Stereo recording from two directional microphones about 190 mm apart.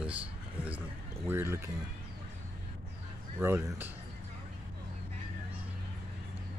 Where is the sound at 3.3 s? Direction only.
10° right (ahead or behind).